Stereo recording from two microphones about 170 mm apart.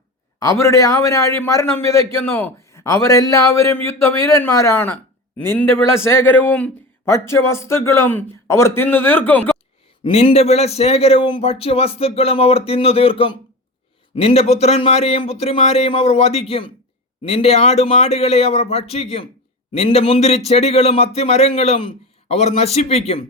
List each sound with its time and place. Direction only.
0.3 s a man's voice: 15° left (ahead or behind)
10.0 s a man's voice: 35° left (ahead or behind)